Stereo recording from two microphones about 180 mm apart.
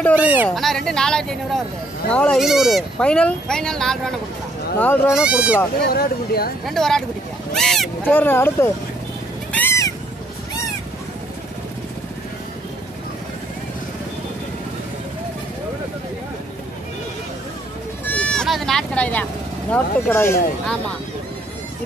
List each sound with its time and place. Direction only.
0.1 s speech: 10° right (ahead or behind)
0.7 s speech: 5° left (ahead or behind)
5.1 s speech: 5° right (ahead or behind)
5.9 s speech: 60° left (ahead or behind)
6.6 s speech: centre (ahead or behind)
8.1 s speech: 10° left (ahead or behind)
9.5 s a sound: 10° left (ahead or behind)
18.0 s sheep: 5° left (ahead or behind)
19.7 s speech: 10° left (ahead or behind)